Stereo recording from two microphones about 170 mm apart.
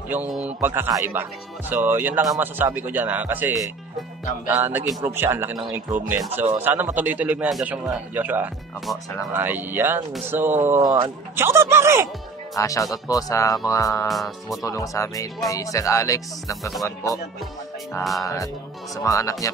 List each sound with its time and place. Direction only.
0.1 s speech: 5° right (ahead or behind)
12.5 s speech: 20° left (ahead or behind)
14.0 s speech: centre (ahead or behind)
14.6 s speech: 20° left (ahead or behind)
18.2 s speech: 20° left (ahead or behind)